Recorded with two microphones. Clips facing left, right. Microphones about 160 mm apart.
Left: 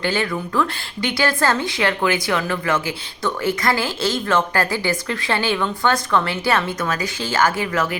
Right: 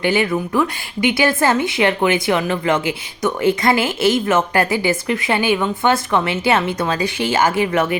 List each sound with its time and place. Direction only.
0.0 s a woman's voice: 15° right (ahead or behind)